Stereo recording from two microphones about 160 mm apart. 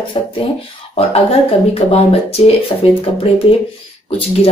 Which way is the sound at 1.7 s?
40° left (ahead or behind).